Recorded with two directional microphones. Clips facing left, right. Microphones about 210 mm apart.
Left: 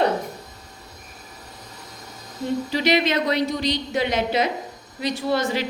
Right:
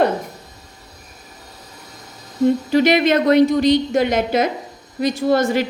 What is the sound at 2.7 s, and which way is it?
A woman's voice, 50° right (ahead or behind).